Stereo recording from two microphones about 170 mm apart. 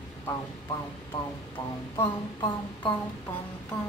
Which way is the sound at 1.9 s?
25° left (ahead or behind).